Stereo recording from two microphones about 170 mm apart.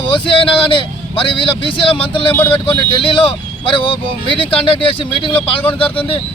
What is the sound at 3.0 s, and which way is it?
Speech, 30° left (ahead or behind).